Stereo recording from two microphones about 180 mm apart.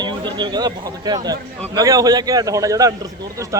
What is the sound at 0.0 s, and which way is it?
A man's voice, 25° right (ahead or behind).